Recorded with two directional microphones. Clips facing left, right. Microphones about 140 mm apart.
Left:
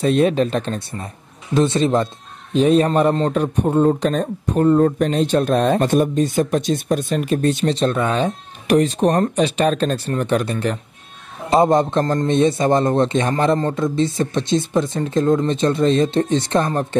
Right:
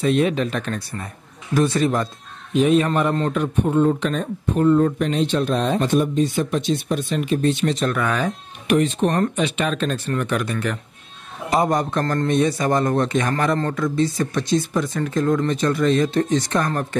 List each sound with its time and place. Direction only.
0.0 s a man's voice: 35° left (ahead or behind)
2.5 s a man's voice: 35° left (ahead or behind)
7.7 s a man's voice: 25° left (ahead or behind)
8.6 s a man's voice: 40° left (ahead or behind)